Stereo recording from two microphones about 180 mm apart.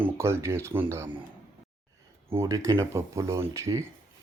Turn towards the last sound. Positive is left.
turn(degrees=-15)  # may be behind; listen again after turning